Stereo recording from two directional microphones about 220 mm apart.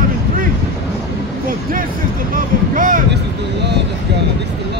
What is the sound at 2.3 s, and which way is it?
Speech, 40° right (ahead or behind).